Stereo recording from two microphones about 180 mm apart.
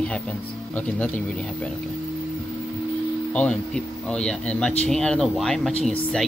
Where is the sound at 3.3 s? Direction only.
5° left (ahead or behind).